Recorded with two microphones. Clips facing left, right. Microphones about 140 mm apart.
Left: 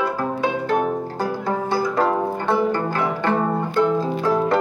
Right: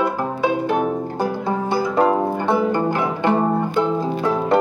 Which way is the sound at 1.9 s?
20° right (ahead or behind).